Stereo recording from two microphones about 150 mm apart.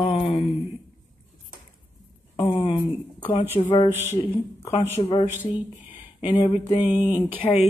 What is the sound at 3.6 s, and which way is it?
Speech, 35° left (ahead or behind).